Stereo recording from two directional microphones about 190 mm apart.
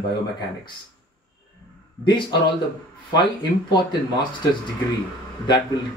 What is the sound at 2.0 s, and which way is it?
Speech, 25° left (ahead or behind).